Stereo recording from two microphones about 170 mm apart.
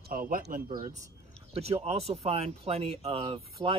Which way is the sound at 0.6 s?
45° right (ahead or behind).